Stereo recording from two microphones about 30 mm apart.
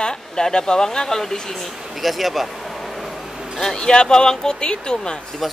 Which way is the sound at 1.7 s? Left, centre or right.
Centre.